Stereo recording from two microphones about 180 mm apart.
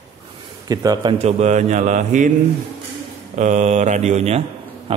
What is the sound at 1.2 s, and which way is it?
Speech, 40° right (ahead or behind).